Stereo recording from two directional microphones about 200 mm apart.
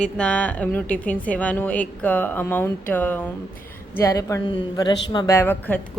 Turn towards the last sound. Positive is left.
turn(degrees=10)  # may be behind; listen again after turning